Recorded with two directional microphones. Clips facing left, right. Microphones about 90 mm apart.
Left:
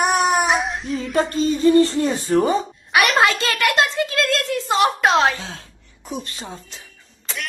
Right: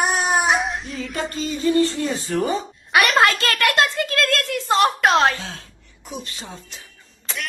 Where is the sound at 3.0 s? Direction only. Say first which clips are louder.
Even; 15° left (ahead or behind).